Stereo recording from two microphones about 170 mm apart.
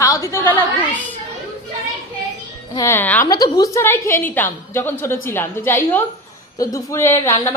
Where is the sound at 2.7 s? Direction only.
15° left (ahead or behind).